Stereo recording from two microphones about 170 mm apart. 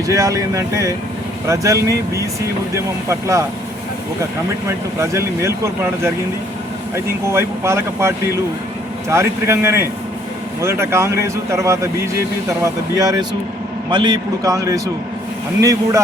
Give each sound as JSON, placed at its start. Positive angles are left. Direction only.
{"t": 0.1, "sound": "a man's voice", "side_deg": -20}
{"t": 4.9, "sound": "speech", "side_deg": -15}
{"t": 13.0, "sound": "a man's voice", "side_deg": -20}